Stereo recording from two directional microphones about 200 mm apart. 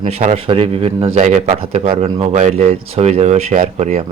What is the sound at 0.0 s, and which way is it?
Speech, 35° right (ahead or behind).